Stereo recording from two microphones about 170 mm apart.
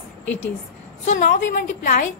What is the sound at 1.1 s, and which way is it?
A woman's voice, 50° left (ahead or behind).